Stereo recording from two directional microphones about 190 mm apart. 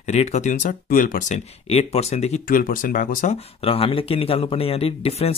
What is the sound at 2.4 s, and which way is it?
Speech, 50° left (ahead or behind).